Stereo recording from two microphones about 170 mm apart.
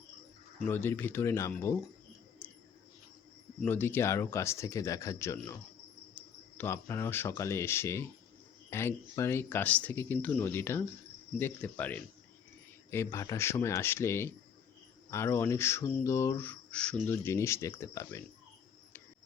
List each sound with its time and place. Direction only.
0.7 s cricket: 10° left (ahead or behind)
2.4 s a sound: 10° left (ahead or behind)
3.6 s cricket: 10° left (ahead or behind)